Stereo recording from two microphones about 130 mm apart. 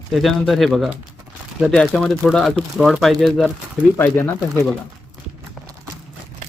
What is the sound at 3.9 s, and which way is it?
Speech, 15° left (ahead or behind).